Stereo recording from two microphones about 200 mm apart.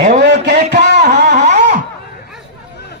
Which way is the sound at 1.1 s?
35° right (ahead or behind).